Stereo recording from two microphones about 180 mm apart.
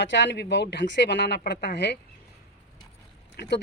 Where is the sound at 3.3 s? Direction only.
70° left (ahead or behind).